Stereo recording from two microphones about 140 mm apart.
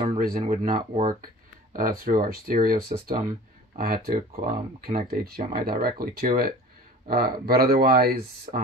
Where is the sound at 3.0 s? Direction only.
70° right (ahead or behind); by 8.6 s 90° right.